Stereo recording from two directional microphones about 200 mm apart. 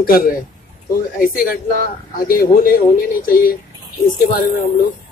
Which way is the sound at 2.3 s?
45° left (ahead or behind).